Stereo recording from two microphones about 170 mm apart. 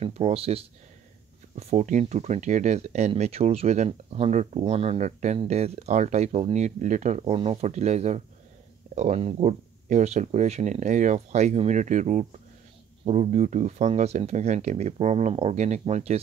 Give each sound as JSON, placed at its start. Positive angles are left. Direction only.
{"t": 0.0, "sound": "speech", "side_deg": -40}